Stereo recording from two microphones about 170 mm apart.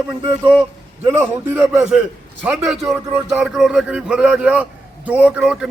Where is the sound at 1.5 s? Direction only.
15° right (ahead or behind).